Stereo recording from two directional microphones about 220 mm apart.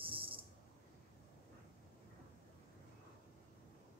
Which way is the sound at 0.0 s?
25° right (ahead or behind).